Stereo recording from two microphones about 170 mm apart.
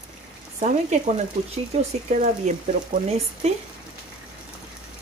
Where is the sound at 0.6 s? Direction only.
45° right (ahead or behind).